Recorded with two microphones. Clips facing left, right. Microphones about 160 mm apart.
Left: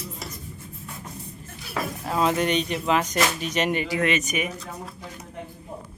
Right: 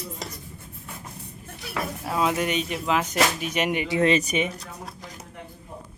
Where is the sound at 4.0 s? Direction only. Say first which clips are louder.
Right 3 dB; 30° right (ahead or behind).